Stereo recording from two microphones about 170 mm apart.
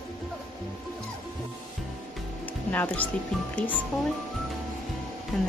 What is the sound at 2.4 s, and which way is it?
Music, 10° left (ahead or behind).